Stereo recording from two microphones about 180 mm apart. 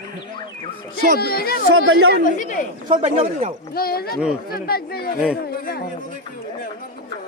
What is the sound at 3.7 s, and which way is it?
Speech, 60° left (ahead or behind).